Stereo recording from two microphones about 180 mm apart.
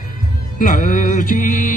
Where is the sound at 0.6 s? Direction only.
50° left (ahead or behind).